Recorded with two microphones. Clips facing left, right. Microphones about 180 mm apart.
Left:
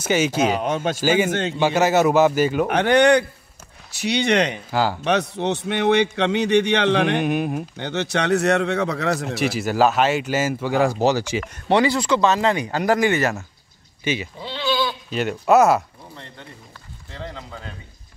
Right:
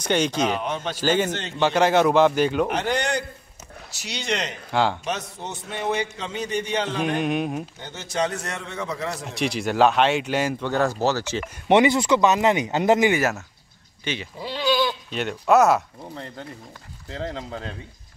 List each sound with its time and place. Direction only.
0.0 s speech: 5° left (ahead or behind)
2.7 s speech: 65° left (ahead or behind)
4.6 s speech: 5° left (ahead or behind)
5.0 s a man's voice: 70° left (ahead or behind)
7.2 s speech: 5° left (ahead or behind)
7.7 s a man's voice: 70° left (ahead or behind)
9.3 s speech: 5° left (ahead or behind)
11.7 s speech: 20° right (ahead or behind)
13.1 s speech: 5° right (ahead or behind)
14.0 s speech: 5° left (ahead or behind)
14.6 s bleat: 40° right (ahead or behind)
15.0 s speech: centre (ahead or behind)
17.2 s speech: 40° right (ahead or behind)